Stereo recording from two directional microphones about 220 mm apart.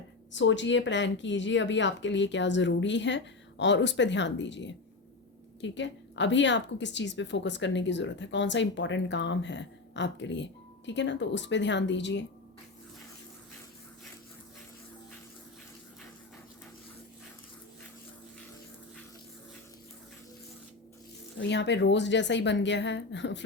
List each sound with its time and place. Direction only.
0.3 s a woman's voice: 55° left (ahead or behind)
21.3 s a woman's voice: 55° left (ahead or behind)